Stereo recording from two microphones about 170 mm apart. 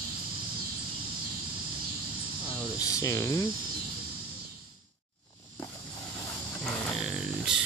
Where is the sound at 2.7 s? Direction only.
20° left (ahead or behind).